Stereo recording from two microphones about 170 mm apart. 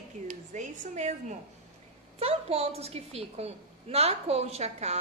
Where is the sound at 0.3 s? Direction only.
45° right (ahead or behind).